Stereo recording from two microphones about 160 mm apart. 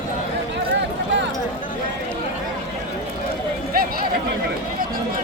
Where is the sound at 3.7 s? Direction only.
65° right (ahead or behind).